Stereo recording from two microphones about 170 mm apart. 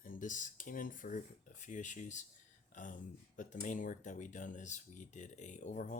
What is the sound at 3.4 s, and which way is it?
Speech, 50° left (ahead or behind).